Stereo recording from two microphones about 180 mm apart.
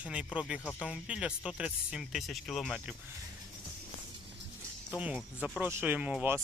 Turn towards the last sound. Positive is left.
turn(degrees=-10)  # may be behind; listen again after turning